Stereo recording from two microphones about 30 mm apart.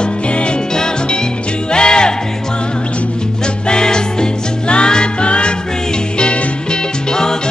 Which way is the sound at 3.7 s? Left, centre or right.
Left.